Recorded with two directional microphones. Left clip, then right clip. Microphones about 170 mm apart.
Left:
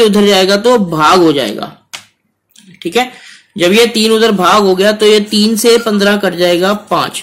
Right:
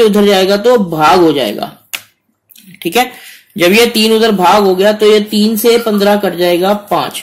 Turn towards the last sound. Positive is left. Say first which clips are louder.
# even
turn(degrees=20)  # may be behind; listen again after turning